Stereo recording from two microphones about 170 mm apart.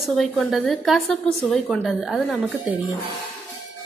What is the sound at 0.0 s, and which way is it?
A woman's voice, centre (ahead or behind).